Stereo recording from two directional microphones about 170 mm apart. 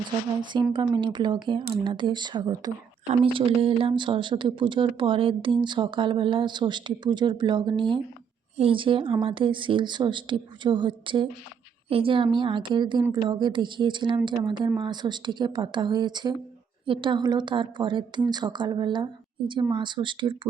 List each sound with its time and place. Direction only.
0.5 s speech: 25° right (ahead or behind)